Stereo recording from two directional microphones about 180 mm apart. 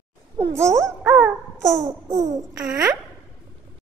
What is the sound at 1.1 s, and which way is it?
Dog, 5° right (ahead or behind).